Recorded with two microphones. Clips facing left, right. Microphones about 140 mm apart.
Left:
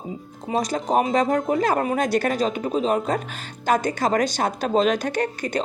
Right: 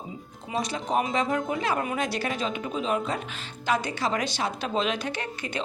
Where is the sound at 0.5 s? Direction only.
35° left (ahead or behind).